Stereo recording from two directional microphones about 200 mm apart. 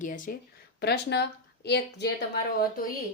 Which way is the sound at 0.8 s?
55° left (ahead or behind).